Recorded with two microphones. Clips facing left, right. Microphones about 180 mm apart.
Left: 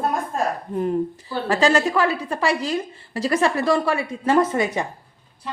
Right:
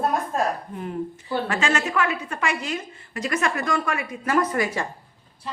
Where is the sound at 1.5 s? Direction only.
35° left (ahead or behind).